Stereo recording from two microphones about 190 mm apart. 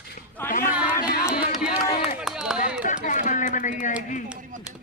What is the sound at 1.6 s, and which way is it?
Run, 5° right (ahead or behind).